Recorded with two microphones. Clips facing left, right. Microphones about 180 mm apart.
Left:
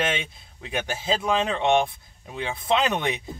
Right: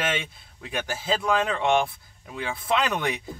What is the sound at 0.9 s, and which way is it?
Speech, 20° left (ahead or behind).